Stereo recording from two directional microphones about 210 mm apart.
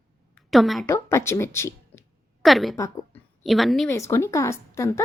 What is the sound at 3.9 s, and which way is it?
A woman's voice, 15° left (ahead or behind).